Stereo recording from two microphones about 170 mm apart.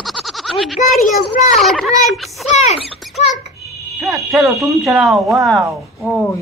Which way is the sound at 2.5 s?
40° left (ahead or behind).